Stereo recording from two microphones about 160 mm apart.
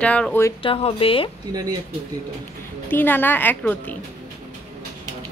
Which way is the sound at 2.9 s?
10° left (ahead or behind).